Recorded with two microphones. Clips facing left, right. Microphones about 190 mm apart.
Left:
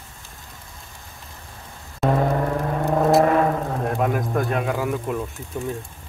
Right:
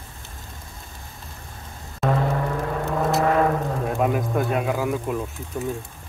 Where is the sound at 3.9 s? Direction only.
Centre (ahead or behind).